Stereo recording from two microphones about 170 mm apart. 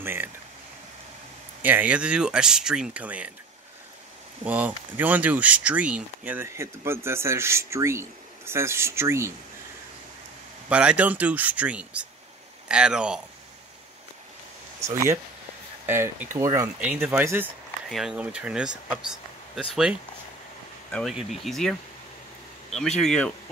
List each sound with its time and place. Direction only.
0.0 s a sound: 15° right (ahead or behind)
1.6 s speech: 10° right (ahead or behind)
4.5 s speech: 10° right (ahead or behind)
10.7 s speech: 5° right (ahead or behind)
14.8 s speech: 15° right (ahead or behind)
16.8 s speech: 5° right (ahead or behind)
17.8 s speech: centre (ahead or behind)
22.8 s speech: 5° left (ahead or behind)